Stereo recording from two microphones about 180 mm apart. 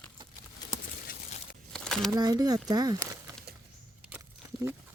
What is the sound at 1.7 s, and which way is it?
Crumpling, 5° left (ahead or behind).